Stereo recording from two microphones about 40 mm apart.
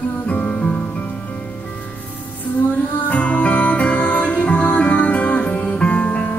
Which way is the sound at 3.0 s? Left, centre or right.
Left.